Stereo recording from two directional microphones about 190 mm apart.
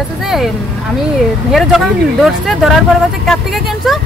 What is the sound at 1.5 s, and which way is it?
Speech, centre (ahead or behind).